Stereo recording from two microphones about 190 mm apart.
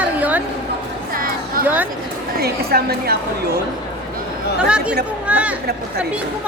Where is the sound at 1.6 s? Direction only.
10° right (ahead or behind).